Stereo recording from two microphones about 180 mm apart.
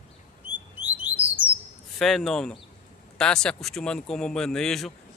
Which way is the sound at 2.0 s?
Centre (ahead or behind).